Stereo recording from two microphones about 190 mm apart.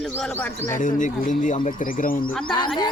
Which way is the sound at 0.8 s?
40° left (ahead or behind).